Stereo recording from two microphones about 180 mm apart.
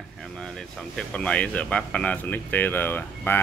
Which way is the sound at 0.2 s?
5° left (ahead or behind).